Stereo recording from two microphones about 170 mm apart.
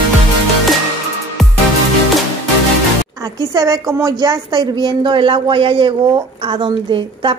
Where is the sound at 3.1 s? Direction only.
20° right (ahead or behind).